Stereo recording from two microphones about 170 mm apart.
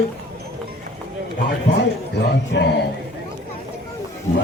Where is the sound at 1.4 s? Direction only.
70° left (ahead or behind).